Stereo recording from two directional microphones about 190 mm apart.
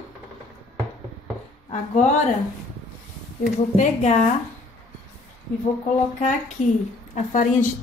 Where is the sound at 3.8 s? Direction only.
40° left (ahead or behind).